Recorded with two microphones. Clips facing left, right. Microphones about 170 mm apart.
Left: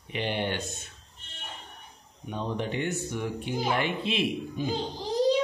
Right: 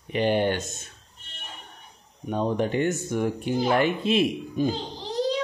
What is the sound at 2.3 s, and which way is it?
Speech, 45° right (ahead or behind).